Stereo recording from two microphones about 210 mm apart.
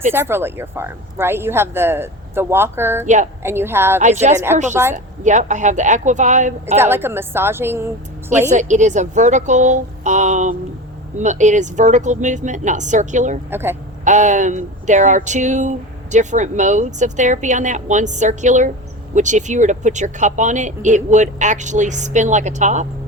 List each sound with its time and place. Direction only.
0.1 s speech: 10° right (ahead or behind)
4.0 s speech: 35° right (ahead or behind)
4.7 s speech: 10° right (ahead or behind)
5.2 s speech: 35° right (ahead or behind)
6.7 s speech: 10° right (ahead or behind)
8.4 s speech: 35° right (ahead or behind)
13.5 s speech: 10° right (ahead or behind)
14.0 s speech: 35° right (ahead or behind)